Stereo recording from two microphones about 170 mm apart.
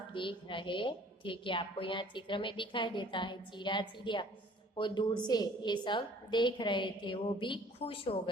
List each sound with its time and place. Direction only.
0.1 s a woman's voice: 30° left (ahead or behind)